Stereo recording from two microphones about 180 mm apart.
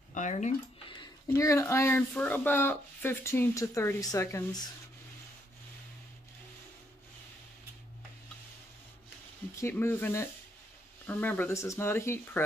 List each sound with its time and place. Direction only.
0.1 s speech: 40° left (ahead or behind)
0.8 s speech: 25° left (ahead or behind)
9.6 s speech: 15° left (ahead or behind)